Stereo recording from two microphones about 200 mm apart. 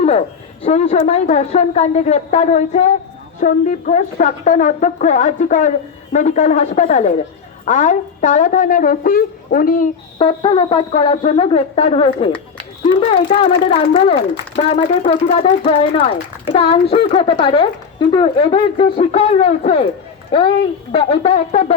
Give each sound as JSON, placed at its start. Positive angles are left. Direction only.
{"t": 0.0, "sound": "a woman's voice", "side_deg": 30}
{"t": 10.2, "sound": "a child's voice", "side_deg": 25}
{"t": 20.9, "sound": "a child's voice", "side_deg": 30}